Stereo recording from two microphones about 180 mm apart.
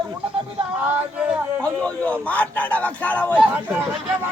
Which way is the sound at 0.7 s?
5° right (ahead or behind).